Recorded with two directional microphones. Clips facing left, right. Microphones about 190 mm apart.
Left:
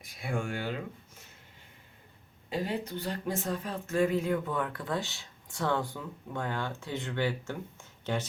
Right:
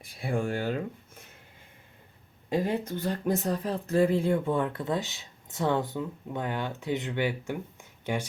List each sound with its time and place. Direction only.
0.0 s speech: 30° right (ahead or behind)
2.5 s speech: 50° right (ahead or behind); by 8.3 s 15° right (ahead or behind)